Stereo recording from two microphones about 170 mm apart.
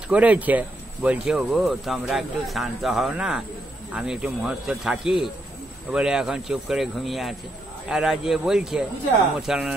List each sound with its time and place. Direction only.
0.1 s speech: 10° right (ahead or behind)